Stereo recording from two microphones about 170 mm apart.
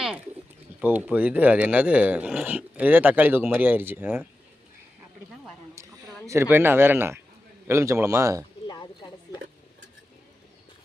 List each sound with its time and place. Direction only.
0.8 s speech: 10° right (ahead or behind)
6.2 s speech: 15° right (ahead or behind)
8.6 s a sound: 25° left (ahead or behind)